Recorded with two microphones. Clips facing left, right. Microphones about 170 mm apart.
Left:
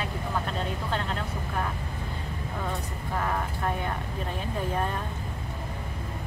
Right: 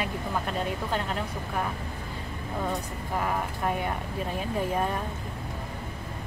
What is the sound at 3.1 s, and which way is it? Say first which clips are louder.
Speech: right 1 dB; 10° right (ahead or behind).